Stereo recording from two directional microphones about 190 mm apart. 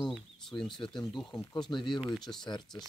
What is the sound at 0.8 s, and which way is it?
Speech, 25° left (ahead or behind).